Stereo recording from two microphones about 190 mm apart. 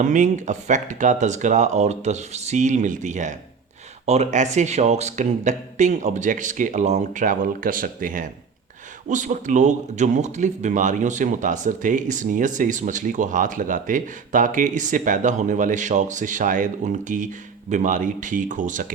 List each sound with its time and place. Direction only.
0.0 s a man's voice: 40° right (ahead or behind)